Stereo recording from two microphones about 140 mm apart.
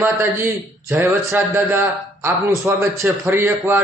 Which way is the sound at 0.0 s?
15° right (ahead or behind).